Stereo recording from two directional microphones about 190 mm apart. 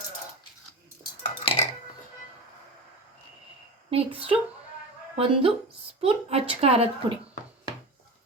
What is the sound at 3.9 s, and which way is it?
Speech, 30° right (ahead or behind).